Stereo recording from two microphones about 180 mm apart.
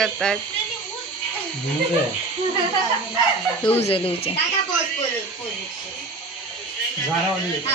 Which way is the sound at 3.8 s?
30° left (ahead or behind).